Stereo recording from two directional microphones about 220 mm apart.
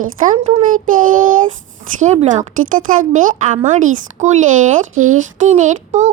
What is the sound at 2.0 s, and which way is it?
A child's voice, 35° right (ahead or behind).